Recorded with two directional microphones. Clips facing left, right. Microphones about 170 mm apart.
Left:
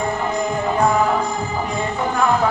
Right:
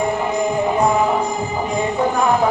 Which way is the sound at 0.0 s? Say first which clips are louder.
Right 3 dB; 15° right (ahead or behind).